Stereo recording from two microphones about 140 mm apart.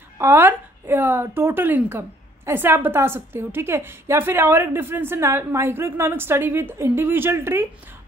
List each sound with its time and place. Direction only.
0.2 s a woman's voice: 15° right (ahead or behind)